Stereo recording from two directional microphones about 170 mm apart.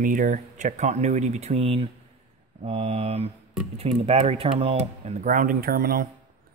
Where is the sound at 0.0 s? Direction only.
55° right (ahead or behind).